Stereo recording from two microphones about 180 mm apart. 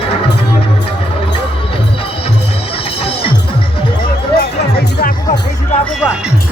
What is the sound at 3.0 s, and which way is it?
Music, 30° left (ahead or behind).